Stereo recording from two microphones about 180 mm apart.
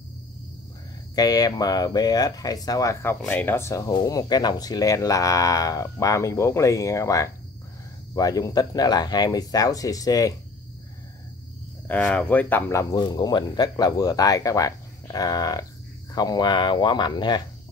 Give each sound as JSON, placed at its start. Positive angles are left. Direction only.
{"t": 1.1, "sound": "speech", "side_deg": 20}
{"t": 11.9, "sound": "speech", "side_deg": 10}